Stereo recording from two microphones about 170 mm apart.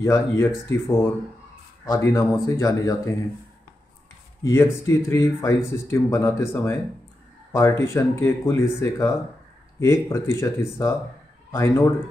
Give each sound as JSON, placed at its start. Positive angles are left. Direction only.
{"t": 0.0, "sound": "speech", "side_deg": 15}
{"t": 4.4, "sound": "speech", "side_deg": 20}